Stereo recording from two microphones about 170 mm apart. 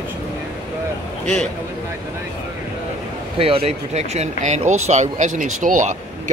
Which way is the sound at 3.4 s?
35° right (ahead or behind).